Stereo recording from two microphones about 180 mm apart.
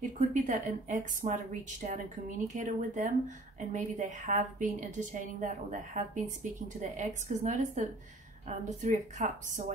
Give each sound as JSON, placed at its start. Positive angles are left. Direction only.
{"t": 0.3, "sound": "a woman's voice", "side_deg": -45}